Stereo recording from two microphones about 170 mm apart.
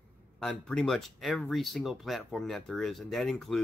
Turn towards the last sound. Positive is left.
turn(degrees=0)  # may be behind; listen again after turning